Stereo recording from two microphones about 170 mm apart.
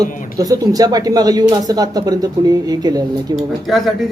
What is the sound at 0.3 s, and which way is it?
Speech, 20° right (ahead or behind).